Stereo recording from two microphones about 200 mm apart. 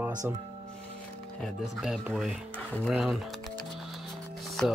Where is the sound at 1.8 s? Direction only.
Centre (ahead or behind).